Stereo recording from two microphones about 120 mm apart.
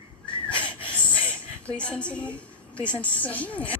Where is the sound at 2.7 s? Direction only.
20° right (ahead or behind).